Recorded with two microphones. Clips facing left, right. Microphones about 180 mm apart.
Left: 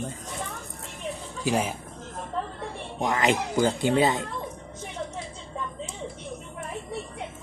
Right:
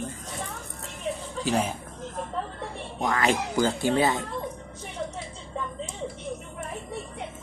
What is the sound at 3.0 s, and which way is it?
Speech, 20° left (ahead or behind).